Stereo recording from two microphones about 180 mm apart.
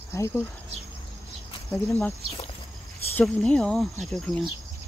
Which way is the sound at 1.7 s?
5° left (ahead or behind).